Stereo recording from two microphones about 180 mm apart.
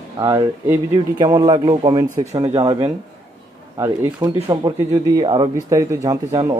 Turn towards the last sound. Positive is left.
turn(degrees=-20)  # may be behind; listen again after turning